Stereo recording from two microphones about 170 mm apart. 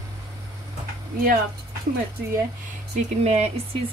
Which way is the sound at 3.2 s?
40° right (ahead or behind).